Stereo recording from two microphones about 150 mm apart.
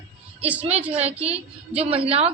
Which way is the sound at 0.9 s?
45° right (ahead or behind).